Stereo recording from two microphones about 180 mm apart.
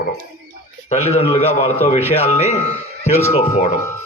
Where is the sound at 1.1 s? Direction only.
35° left (ahead or behind).